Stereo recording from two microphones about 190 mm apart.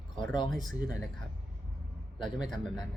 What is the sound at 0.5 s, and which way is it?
Speech, centre (ahead or behind).